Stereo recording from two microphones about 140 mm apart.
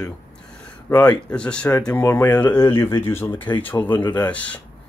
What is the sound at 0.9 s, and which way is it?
Speech, 10° left (ahead or behind).